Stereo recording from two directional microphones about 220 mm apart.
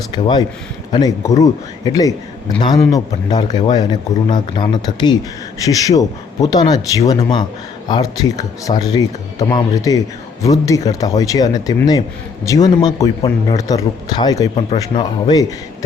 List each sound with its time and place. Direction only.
0.1 s speech: 20° left (ahead or behind)